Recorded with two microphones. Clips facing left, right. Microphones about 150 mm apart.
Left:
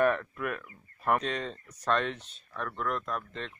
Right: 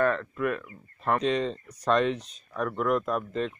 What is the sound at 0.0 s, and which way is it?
Speech, 10° left (ahead or behind).